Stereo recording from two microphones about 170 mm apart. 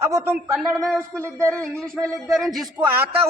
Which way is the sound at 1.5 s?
5° left (ahead or behind).